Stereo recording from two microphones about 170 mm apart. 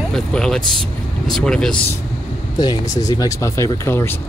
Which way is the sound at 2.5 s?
25° left (ahead or behind).